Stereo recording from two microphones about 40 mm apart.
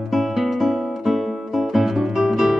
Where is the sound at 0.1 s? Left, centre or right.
Centre.